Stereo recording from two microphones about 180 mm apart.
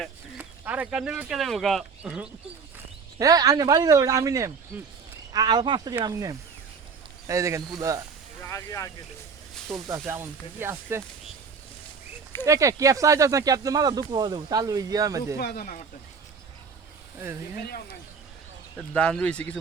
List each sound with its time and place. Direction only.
0.3 s speech: 10° right (ahead or behind)
3.2 s speech: 20° right (ahead or behind)
8.4 s a sound: 15° left (ahead or behind)
9.6 s speech: 15° right (ahead or behind)
12.5 s speech: 15° right (ahead or behind)
15.4 s speech: 55° left (ahead or behind)
17.2 s speech: 15° right (ahead or behind)
18.8 s speech: 5° left (ahead or behind)